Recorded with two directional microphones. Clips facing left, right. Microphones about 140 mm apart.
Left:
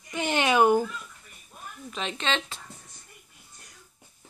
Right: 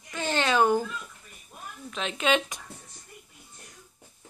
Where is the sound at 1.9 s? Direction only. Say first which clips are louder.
Right 4 dB; centre (ahead or behind).